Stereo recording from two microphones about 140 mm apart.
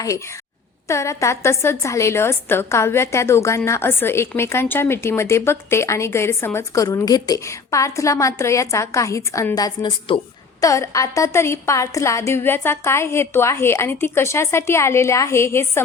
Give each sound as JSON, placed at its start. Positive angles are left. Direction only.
{"t": 0.9, "sound": "a woman's voice", "side_deg": 20}